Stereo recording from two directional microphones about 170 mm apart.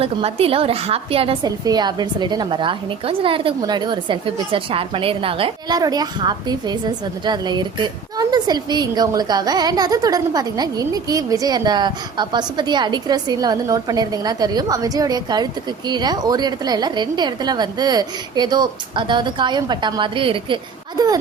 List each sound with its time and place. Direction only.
0.0 s a woman's voice: 35° right (ahead or behind)